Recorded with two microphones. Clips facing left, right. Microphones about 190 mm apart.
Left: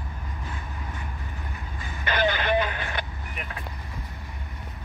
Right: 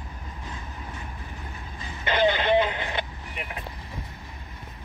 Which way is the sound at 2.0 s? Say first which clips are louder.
Right 3 dB; 25° right (ahead or behind).